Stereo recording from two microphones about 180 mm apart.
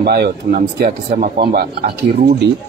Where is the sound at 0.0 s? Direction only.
65° right (ahead or behind).